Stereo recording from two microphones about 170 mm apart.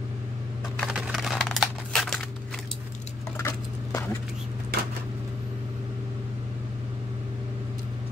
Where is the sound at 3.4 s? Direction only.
15° left (ahead or behind).